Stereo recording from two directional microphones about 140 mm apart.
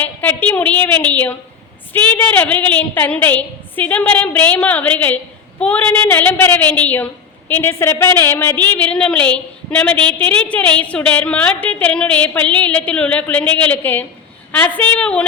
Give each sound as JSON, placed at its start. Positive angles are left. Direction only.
{"t": 0.0, "sound": "a woman's voice", "side_deg": 10}